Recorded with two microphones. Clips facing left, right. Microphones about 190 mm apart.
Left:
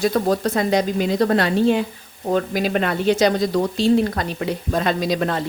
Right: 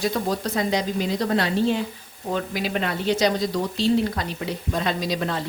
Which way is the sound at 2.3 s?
45° left (ahead or behind).